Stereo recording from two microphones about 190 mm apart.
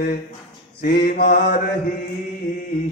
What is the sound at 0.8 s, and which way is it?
Mantra, 55° left (ahead or behind).